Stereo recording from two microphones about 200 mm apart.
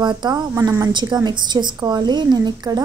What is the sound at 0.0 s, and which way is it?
A woman's voice, 20° right (ahead or behind).